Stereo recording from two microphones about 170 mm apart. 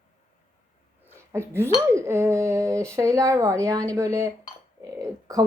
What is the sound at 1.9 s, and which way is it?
A woman's voice, 15° right (ahead or behind).